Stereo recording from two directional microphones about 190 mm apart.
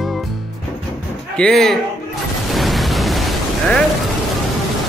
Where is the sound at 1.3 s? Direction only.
5° left (ahead or behind).